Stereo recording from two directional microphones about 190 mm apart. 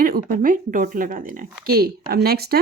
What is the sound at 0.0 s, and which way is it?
Speech, 50° right (ahead or behind).